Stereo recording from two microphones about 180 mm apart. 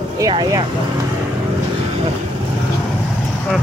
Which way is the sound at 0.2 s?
20° right (ahead or behind).